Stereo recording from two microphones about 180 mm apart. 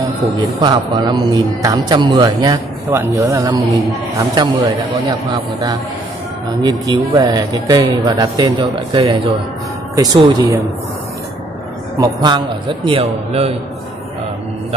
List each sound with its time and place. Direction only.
0.2 s a man's voice: 25° right (ahead or behind)
12.0 s a man's voice: 25° right (ahead or behind)